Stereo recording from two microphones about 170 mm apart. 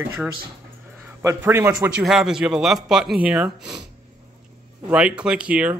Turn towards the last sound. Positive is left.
turn(degrees=-5)  # may be behind; listen again after turning